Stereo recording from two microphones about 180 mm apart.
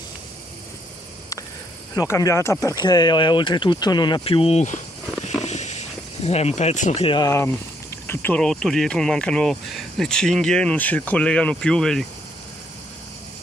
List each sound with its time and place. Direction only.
2.0 s speech: 15° left (ahead or behind); by 4.7 s 35° left (ahead or behind)
5.4 s a sound: 40° left (ahead or behind)
7.2 s speech: 15° left (ahead or behind)